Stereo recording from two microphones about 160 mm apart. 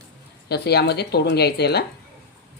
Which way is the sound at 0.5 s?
90° left.